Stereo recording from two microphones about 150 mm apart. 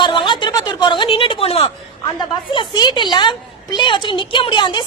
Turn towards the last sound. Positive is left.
turn(degrees=30)  # may be behind; listen again after turning